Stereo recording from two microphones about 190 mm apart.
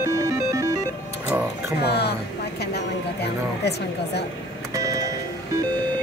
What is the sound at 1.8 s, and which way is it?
Speech, 60° left (ahead or behind).